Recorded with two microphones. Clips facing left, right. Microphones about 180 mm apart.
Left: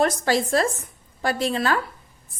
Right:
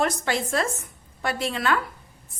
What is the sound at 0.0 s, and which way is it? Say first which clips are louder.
A woman's voice: left 4 dB; 35° left (ahead or behind).